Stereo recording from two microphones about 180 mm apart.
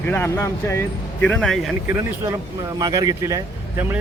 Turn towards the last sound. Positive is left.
turn(degrees=-15)  # may be behind; listen again after turning